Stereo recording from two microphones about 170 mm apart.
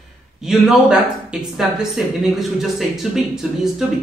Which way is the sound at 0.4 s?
Centre (ahead or behind).